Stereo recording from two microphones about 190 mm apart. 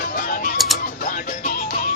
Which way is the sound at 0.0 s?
45° left (ahead or behind).